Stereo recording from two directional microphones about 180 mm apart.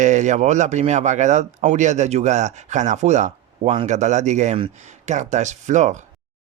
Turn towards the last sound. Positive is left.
turn(degrees=-40)  # may be behind; listen again after turning